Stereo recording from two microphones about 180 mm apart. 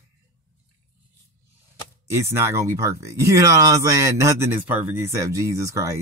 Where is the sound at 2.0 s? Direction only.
15° right (ahead or behind).